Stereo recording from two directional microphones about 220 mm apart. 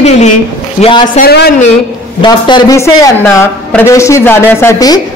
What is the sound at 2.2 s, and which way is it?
A man's voice, 20° left (ahead or behind).